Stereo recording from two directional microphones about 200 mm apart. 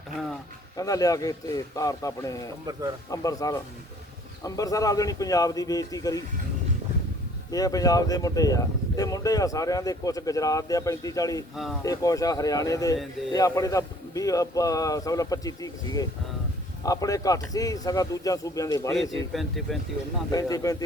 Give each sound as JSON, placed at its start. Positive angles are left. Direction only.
{"t": 0.8, "sound": "speech", "side_deg": 15}
{"t": 7.5, "sound": "speech", "side_deg": 20}
{"t": 11.5, "sound": "speech", "side_deg": 0}
{"t": 11.8, "sound": "speech", "side_deg": 15}
{"t": 19.3, "sound": "speech", "side_deg": 0}
{"t": 20.3, "sound": "speech", "side_deg": 20}